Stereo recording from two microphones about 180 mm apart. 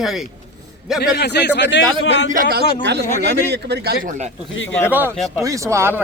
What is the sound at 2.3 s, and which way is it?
Speech, 55° right (ahead or behind).